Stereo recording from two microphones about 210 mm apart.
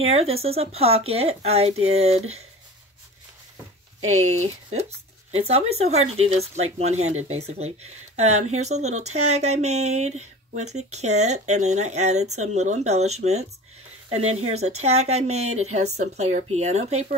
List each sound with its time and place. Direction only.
0.0 s speech: 30° right (ahead or behind)
5.3 s speech: 30° right (ahead or behind)